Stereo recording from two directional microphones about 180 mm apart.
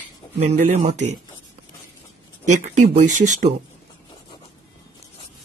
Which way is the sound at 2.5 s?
40° right (ahead or behind).